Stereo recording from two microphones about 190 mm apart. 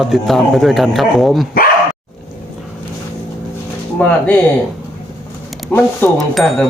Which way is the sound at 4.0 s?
10° left (ahead or behind).